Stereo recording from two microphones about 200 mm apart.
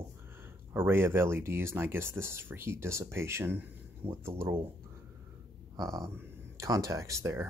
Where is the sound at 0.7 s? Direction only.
10° right (ahead or behind).